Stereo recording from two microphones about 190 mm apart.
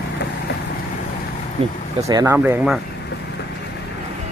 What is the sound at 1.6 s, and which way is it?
Speech, 35° right (ahead or behind).